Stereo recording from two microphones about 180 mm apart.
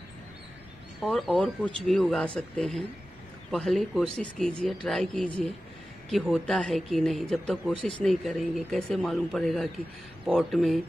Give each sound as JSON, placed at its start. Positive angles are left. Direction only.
{"t": 1.0, "sound": "speech", "side_deg": 0}